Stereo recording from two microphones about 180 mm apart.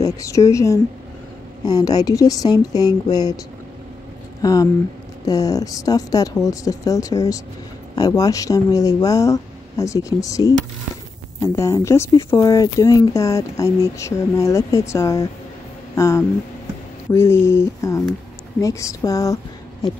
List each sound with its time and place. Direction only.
0.0 s speech: 15° left (ahead or behind)
4.4 s speech: 20° left (ahead or behind)